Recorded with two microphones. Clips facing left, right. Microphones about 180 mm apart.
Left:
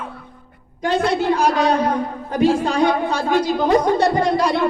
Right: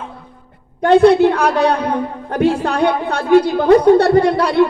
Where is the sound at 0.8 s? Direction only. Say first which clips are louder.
Right 10 dB; 60° right (ahead or behind).